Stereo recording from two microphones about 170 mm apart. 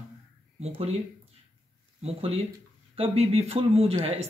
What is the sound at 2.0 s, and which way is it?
Speech, 35° right (ahead or behind).